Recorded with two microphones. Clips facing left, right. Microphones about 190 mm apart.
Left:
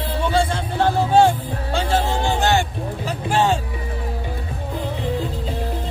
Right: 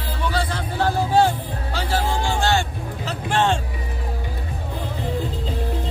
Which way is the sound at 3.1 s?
10° left (ahead or behind).